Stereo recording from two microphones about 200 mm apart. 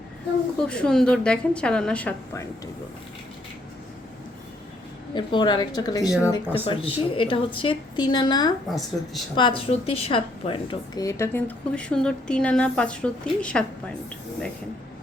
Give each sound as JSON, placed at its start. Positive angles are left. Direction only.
{"t": 0.6, "sound": "a woman's voice", "side_deg": 5}
{"t": 5.1, "sound": "a woman's voice", "side_deg": 25}